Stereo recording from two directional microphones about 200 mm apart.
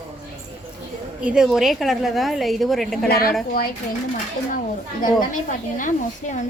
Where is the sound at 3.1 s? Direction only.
50° left (ahead or behind).